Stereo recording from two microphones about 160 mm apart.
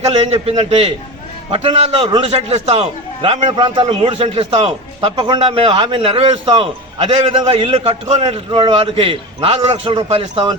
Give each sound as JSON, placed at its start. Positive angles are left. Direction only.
{"t": 0.1, "sound": "a man's voice", "side_deg": -40}